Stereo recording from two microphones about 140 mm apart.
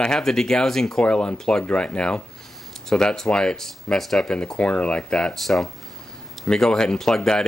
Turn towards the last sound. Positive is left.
turn(degrees=5)  # may be behind; listen again after turning